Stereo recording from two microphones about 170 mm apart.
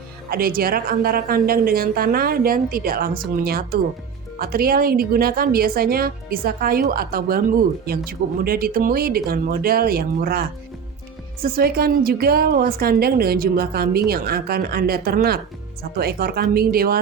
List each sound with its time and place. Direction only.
0.3 s a woman's voice: 60° right (ahead or behind)
8.4 s a woman's voice: 60° right (ahead or behind)